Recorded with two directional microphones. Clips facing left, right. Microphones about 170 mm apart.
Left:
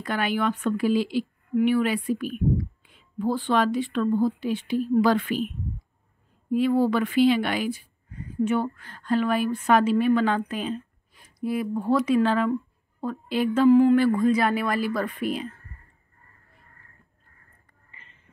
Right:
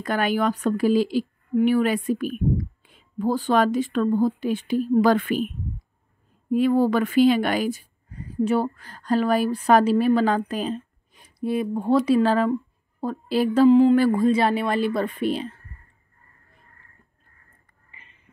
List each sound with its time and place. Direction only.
0.0 s speech: 45° right (ahead or behind)
6.5 s speech: 45° right (ahead or behind)
11.1 s speech: 25° right (ahead or behind)
13.7 s speech: 20° right (ahead or behind)
13.9 s speech: 35° right (ahead or behind)